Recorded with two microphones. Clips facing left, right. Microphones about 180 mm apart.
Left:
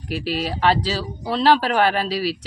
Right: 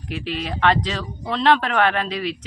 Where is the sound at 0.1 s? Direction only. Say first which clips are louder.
Left 3 dB; 35° left (ahead or behind).